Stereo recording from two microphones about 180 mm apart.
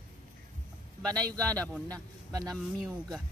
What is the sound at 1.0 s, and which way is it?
Speech, 5° left (ahead or behind).